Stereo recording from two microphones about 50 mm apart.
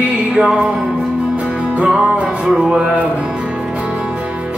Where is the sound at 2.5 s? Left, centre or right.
Centre.